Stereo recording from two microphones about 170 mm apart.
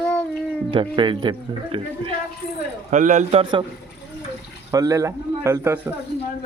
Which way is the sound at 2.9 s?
45° right (ahead or behind).